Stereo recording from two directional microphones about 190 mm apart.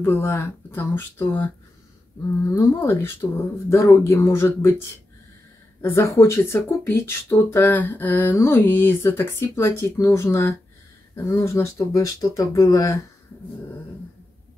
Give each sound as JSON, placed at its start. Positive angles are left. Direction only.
{"t": 0.0, "sound": "speech", "side_deg": 10}
{"t": 2.5, "sound": "speech", "side_deg": 15}